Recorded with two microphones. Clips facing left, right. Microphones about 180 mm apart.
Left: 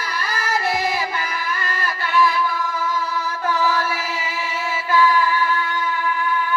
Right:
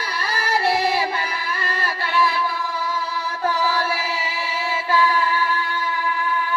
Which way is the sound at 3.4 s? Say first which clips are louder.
Even; 35° right (ahead or behind).